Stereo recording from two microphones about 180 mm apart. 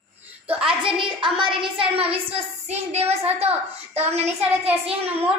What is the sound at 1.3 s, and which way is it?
A woman's voice, 30° right (ahead or behind).